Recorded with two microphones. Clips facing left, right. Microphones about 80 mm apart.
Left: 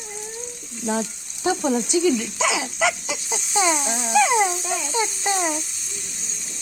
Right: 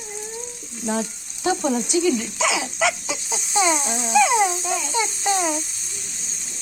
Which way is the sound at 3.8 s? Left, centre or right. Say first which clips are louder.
Right 1 dB; left.